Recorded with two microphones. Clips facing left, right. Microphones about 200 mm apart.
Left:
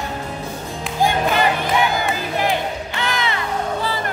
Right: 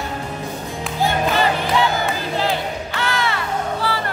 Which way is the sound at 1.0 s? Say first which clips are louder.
Left 1 dB; 15° left (ahead or behind).